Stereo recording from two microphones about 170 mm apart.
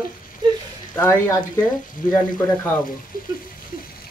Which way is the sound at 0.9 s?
15° left (ahead or behind).